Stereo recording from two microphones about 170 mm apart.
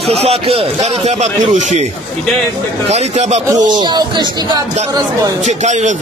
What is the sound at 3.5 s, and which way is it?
Speech, 25° right (ahead or behind).